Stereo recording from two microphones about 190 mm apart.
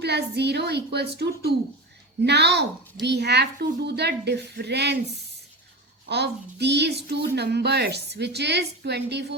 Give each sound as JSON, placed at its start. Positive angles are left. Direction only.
{"t": 0.0, "sound": "a woman's voice", "side_deg": -60}
{"t": 6.1, "sound": "a woman's voice", "side_deg": -60}